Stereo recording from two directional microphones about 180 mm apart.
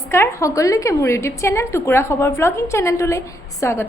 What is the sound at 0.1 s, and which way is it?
A woman's voice, 15° left (ahead or behind).